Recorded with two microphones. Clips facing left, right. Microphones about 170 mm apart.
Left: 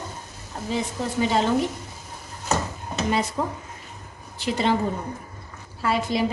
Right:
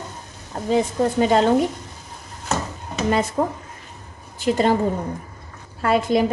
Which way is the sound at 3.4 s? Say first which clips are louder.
Right 5 dB; 40° right (ahead or behind).